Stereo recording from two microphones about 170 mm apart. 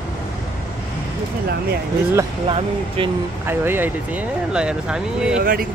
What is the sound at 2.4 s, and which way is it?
Speech, 30° right (ahead or behind).